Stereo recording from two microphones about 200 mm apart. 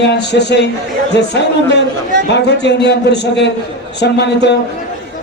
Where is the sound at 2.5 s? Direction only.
60° left (ahead or behind).